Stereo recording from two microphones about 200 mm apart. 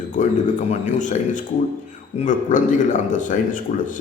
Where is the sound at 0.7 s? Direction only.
35° left (ahead or behind).